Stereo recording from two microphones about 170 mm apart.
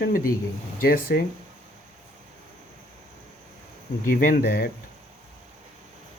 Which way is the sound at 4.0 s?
55° left (ahead or behind).